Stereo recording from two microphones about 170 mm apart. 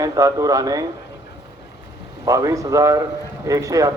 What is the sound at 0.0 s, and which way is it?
Speech, 20° right (ahead or behind).